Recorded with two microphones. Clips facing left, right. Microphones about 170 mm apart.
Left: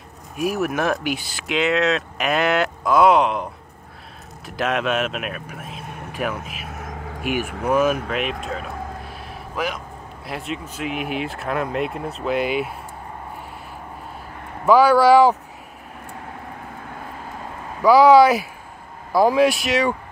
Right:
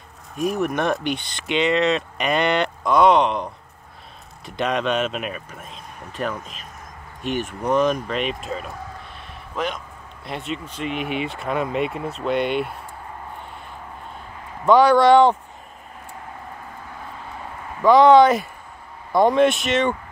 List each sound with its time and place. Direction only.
0.4 s speech: 5° left (ahead or behind)
4.5 s speech: centre (ahead or behind)
6.7 s a sound: 75° left (ahead or behind)
7.2 s speech: 10° left (ahead or behind)
8.1 s a sound: centre (ahead or behind)
10.2 s speech: centre (ahead or behind)
14.6 s speech: 5° left (ahead or behind)
17.8 s speech: 5° left (ahead or behind)